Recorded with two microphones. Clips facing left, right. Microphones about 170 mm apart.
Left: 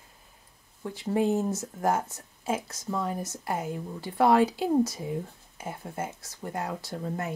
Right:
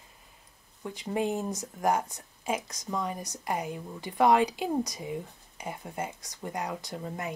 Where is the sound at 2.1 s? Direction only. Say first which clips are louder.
Left 2 dB; 15° right (ahead or behind).